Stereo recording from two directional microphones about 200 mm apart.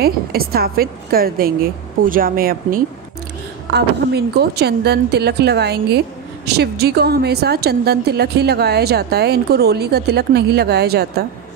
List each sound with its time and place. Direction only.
0.0 s a woman's voice: 50° right (ahead or behind)